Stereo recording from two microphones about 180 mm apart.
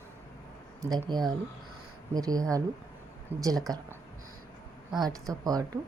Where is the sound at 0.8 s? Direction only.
20° right (ahead or behind).